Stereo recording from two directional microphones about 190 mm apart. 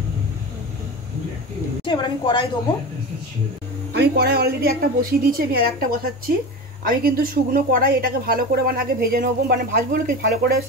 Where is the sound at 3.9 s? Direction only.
55° right (ahead or behind).